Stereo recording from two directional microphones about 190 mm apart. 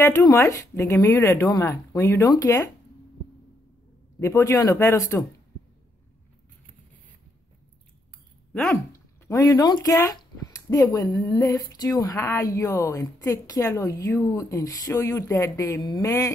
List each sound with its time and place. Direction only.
0.3 s speech: 15° left (ahead or behind)
4.2 s speech: 15° left (ahead or behind)
8.7 s speech: 15° left (ahead or behind)